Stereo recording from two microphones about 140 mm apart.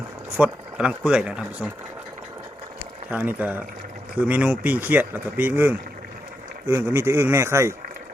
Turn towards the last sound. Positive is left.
turn(degrees=-20)  # may be behind; listen again after turning